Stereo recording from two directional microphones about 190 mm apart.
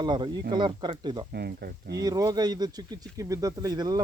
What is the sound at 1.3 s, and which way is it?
Speech, 60° right (ahead or behind).